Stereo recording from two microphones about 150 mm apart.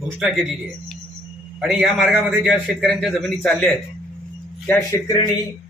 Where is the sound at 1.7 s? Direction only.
Centre (ahead or behind).